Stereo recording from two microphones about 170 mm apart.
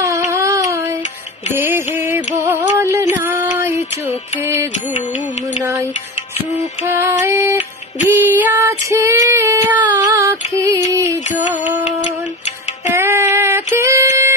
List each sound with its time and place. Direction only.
0.0 s a sound: 15° right (ahead or behind)
1.5 s music: 15° right (ahead or behind)
5.6 s music: 15° right (ahead or behind)
6.9 s music: 15° right (ahead or behind)
8.1 s female singing: 15° right (ahead or behind)
12.9 s music: 15° right (ahead or behind)
13.7 s a sound: 15° right (ahead or behind)